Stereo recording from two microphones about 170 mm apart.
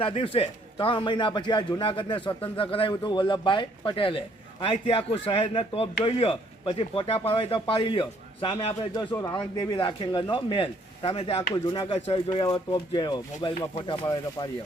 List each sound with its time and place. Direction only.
0.0 s a man's voice: 35° left (ahead or behind)